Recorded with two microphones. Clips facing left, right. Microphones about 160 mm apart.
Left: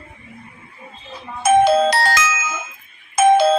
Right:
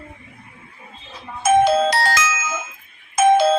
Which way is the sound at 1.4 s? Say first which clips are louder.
Left 2 dB; 65° left (ahead or behind).